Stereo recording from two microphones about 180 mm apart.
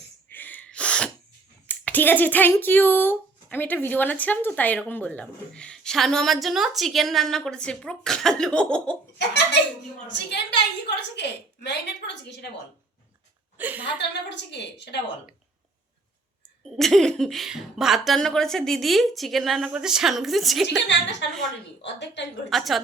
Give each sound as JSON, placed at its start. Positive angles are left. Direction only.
{"t": 0.3, "sound": "sneeze", "side_deg": 10}
{"t": 1.6, "sound": "speech", "side_deg": 10}
{"t": 9.1, "sound": "a woman's voice", "side_deg": 70}
{"t": 13.6, "sound": "a woman's voice", "side_deg": -10}
{"t": 14.1, "sound": "a woman's voice", "side_deg": 70}
{"t": 16.6, "sound": "speech", "side_deg": 0}
{"t": 20.8, "sound": "a woman's voice", "side_deg": 80}
{"t": 22.4, "sound": "speech", "side_deg": 0}